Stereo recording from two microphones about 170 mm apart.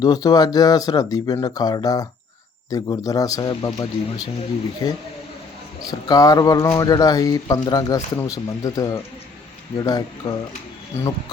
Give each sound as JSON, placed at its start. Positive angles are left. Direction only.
{"t": 0.0, "sound": "speech", "side_deg": 20}